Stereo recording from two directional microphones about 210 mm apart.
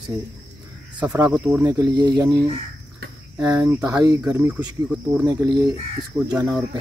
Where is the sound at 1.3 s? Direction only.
5° right (ahead or behind).